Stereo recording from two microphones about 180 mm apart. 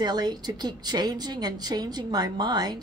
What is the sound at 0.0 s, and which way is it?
A woman's voice, 25° right (ahead or behind).